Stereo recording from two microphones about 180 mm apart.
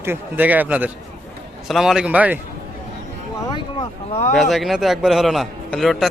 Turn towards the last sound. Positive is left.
turn(degrees=0)  # may be behind; listen again after turning